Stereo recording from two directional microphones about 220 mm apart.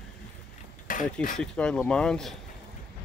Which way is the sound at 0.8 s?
40° left (ahead or behind).